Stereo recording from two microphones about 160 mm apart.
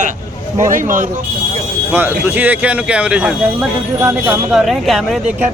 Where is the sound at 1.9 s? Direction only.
10° right (ahead or behind).